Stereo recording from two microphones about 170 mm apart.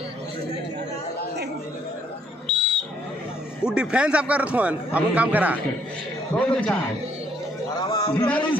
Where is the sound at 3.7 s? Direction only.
5° right (ahead or behind).